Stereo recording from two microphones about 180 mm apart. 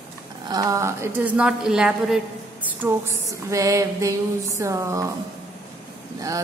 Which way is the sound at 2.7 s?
15° right (ahead or behind).